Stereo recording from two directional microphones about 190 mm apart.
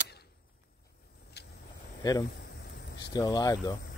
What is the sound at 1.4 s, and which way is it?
Vehicle, 60° left (ahead or behind).